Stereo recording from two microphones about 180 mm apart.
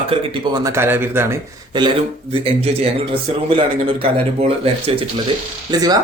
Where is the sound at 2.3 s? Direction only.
30° right (ahead or behind).